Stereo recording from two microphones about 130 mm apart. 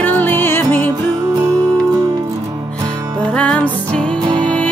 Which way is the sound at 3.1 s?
10° left (ahead or behind).